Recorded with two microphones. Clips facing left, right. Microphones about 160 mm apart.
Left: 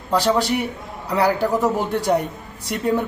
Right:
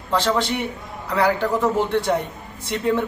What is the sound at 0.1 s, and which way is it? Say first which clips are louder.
A man's voice: left 2 dB; 10° left (ahead or behind).